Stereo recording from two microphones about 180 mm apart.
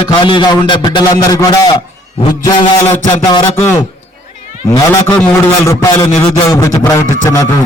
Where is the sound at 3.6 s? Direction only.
10° left (ahead or behind).